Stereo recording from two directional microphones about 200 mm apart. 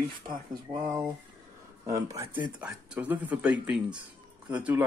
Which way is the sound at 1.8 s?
15° right (ahead or behind).